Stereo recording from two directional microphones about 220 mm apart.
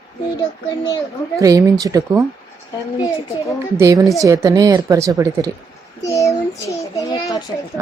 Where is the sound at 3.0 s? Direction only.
15° left (ahead or behind).